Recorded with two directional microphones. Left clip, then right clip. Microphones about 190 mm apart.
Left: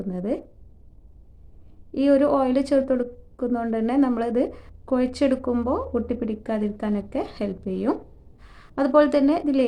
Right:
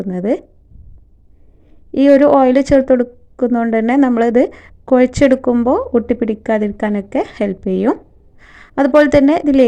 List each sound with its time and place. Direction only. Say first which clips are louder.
0.0 s a woman's voice: right 10 dB; 35° right (ahead or behind)
1.9 s a woman's voice: right 10 dB; 35° right (ahead or behind)